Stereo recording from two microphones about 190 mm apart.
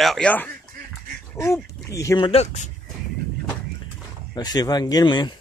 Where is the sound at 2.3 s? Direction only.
35° left (ahead or behind).